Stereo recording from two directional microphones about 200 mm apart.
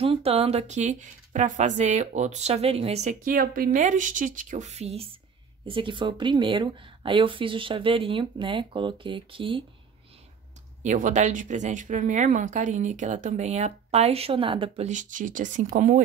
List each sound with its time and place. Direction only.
0.0 s a woman's voice: 30° right (ahead or behind)
10.8 s speech: 40° right (ahead or behind)